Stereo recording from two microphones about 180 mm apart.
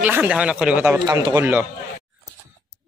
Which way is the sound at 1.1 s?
20° right (ahead or behind).